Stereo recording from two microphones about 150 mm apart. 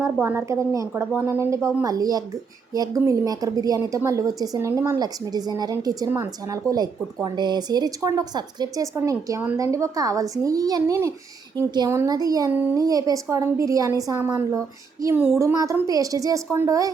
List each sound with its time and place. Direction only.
0.0 s a woman's voice: 15° right (ahead or behind)